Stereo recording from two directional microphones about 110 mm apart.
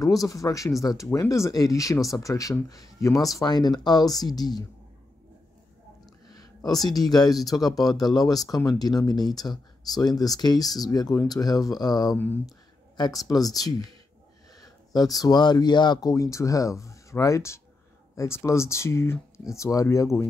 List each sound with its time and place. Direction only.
0.0 s speech: 30° left (ahead or behind)
6.3 s speech: 35° left (ahead or behind)
12.4 s a sound: 40° left (ahead or behind)
13.2 s speech: 35° left (ahead or behind)
15.0 s speech: 35° left (ahead or behind)